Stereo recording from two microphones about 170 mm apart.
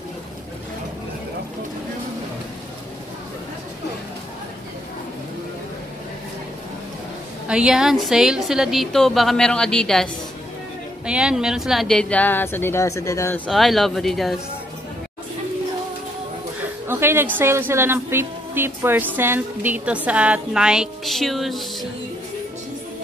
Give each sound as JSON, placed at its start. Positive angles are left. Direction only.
{"t": 7.4, "sound": "a woman's voice", "side_deg": -5}
{"t": 11.1, "sound": "a woman's voice", "side_deg": -5}
{"t": 13.5, "sound": "a woman's voice", "side_deg": 0}
{"t": 16.8, "sound": "speech", "side_deg": -15}